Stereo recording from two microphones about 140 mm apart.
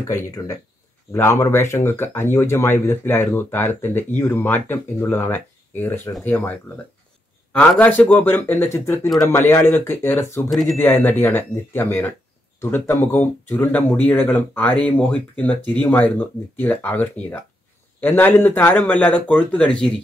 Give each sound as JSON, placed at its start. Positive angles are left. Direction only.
{"t": 0.1, "sound": "speech", "side_deg": 25}
{"t": 7.5, "sound": "speech", "side_deg": 10}
{"t": 10.5, "sound": "speech", "side_deg": 0}
{"t": 10.8, "sound": "speech", "side_deg": 15}